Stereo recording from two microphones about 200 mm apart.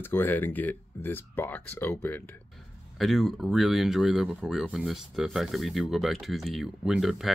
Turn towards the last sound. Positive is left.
turn(degrees=0)  # may be behind; listen again after turning